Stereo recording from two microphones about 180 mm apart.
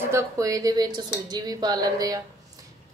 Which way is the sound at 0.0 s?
15° right (ahead or behind).